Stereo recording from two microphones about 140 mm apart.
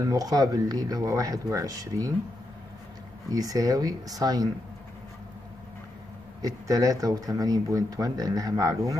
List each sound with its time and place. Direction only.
0.1 s speech: 25° right (ahead or behind)
3.3 s speech: 25° right (ahead or behind)
6.4 s speech: 25° right (ahead or behind)